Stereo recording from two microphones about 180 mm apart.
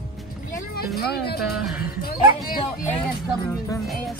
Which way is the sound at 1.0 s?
60° left (ahead or behind).